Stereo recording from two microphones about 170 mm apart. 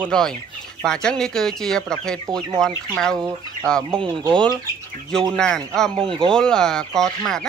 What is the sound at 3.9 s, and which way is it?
Speech, 30° right (ahead or behind).